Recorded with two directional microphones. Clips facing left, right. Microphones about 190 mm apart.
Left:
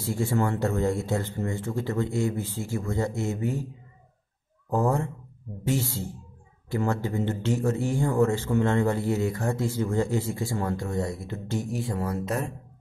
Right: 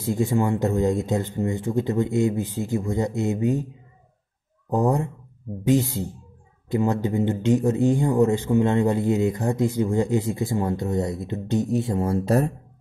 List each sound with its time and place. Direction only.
0.0 s a man's voice: 15° right (ahead or behind)
4.6 s a man's voice: 20° right (ahead or behind); by 12.5 s 35° right (ahead or behind)